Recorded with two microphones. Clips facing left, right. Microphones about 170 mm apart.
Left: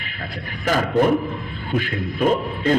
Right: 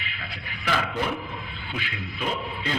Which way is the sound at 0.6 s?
45° left (ahead or behind).